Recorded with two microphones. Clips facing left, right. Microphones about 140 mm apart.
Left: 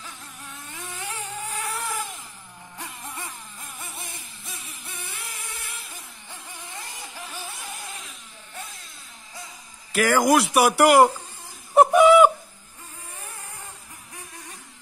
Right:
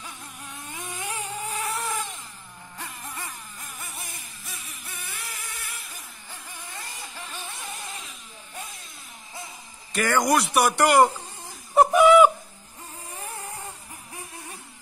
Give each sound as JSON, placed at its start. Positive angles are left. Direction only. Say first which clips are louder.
{"t": 0.7, "sound": "vehicle", "louder": "right 2 dB", "side_deg": -10}
{"t": 2.8, "sound": "a sound", "louder": "even", "side_deg": 20}
{"t": 3.9, "sound": "music", "louder": "left 1 dB", "side_deg": 25}
{"t": 6.7, "sound": "vehicle", "louder": "left 1 dB", "side_deg": 15}
{"t": 7.8, "sound": "vehicle", "louder": "even", "side_deg": 0}
{"t": 9.9, "sound": "speech", "louder": "left 3 dB", "side_deg": 5}
{"t": 11.7, "sound": "a sound", "louder": "left 1 dB", "side_deg": 0}